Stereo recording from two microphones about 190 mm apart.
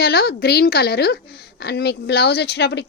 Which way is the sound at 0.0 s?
55° left (ahead or behind).